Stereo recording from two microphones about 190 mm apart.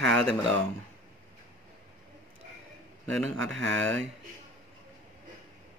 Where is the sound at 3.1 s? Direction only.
5° left (ahead or behind).